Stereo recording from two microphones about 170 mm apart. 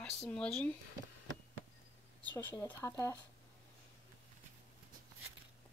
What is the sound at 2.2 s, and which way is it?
Speech, 10° left (ahead or behind).